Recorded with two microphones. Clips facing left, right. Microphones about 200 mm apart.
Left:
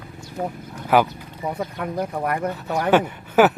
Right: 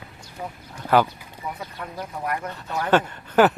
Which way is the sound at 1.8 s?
60° left (ahead or behind).